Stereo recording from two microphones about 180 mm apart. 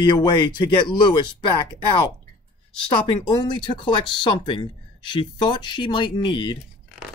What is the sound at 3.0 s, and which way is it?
Speech, 25° left (ahead or behind).